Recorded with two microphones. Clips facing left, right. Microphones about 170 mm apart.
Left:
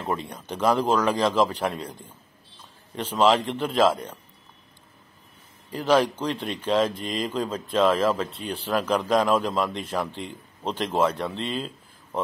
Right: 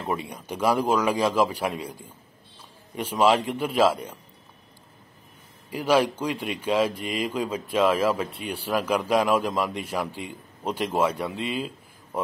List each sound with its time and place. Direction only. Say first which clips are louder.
0.0 s speech: even; 10° right (ahead or behind)
5.7 s speech: left 1 dB; 10° right (ahead or behind)